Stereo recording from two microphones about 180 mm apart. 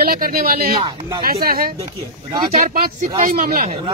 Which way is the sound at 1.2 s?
55° right (ahead or behind).